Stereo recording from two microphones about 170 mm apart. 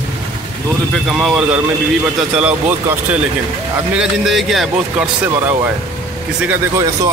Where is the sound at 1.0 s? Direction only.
Centre (ahead or behind).